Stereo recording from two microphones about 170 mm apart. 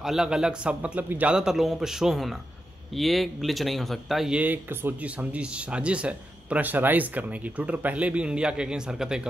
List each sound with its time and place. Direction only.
0.0 s a man's voice: 5° right (ahead or behind)